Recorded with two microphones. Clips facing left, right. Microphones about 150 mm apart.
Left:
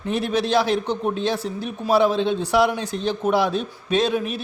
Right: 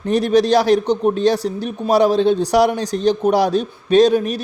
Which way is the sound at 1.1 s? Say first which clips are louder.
Right 7 dB; 35° right (ahead or behind).